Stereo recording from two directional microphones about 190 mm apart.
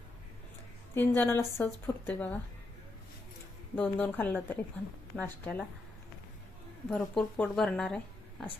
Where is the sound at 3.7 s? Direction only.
10° left (ahead or behind).